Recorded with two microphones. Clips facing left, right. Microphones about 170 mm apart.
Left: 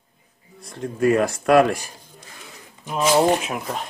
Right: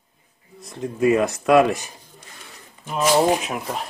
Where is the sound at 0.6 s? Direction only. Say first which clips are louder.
Even; centre (ahead or behind).